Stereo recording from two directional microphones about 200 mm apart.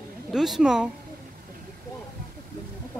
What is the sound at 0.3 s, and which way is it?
Speech, centre (ahead or behind).